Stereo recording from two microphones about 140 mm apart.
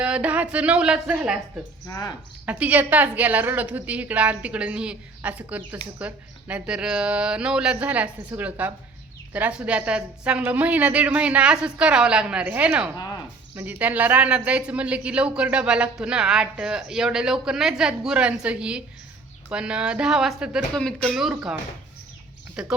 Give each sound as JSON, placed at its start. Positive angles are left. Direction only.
{"t": 0.0, "sound": "speech", "side_deg": -10}
{"t": 1.9, "sound": "speech", "side_deg": 25}
{"t": 2.5, "sound": "speech", "side_deg": -10}
{"t": 22.6, "sound": "speech", "side_deg": -5}